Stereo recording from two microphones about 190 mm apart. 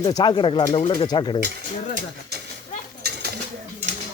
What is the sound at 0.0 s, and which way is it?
Speech, 20° left (ahead or behind).